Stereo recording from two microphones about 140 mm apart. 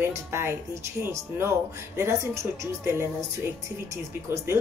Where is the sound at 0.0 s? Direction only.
20° right (ahead or behind).